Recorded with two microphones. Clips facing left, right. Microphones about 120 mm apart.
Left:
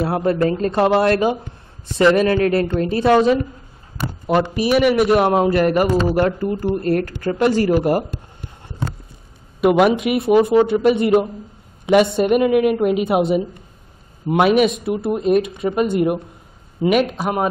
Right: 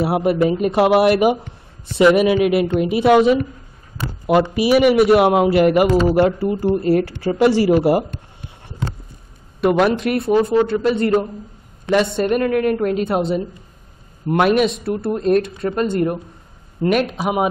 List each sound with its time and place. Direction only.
0.1 s a woman's voice: 20° right (ahead or behind)
9.6 s speech: 5° left (ahead or behind)
10.4 s speech: 20° left (ahead or behind)
10.9 s a woman's voice: 10° left (ahead or behind); by 17.5 s 5° right (ahead or behind)